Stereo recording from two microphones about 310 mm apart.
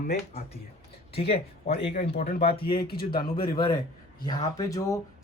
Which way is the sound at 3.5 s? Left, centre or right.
Centre.